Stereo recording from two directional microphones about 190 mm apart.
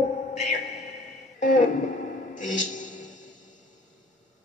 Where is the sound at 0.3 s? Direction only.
35° left (ahead or behind).